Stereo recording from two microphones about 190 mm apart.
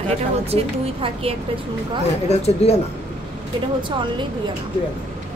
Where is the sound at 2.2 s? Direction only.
35° left (ahead or behind).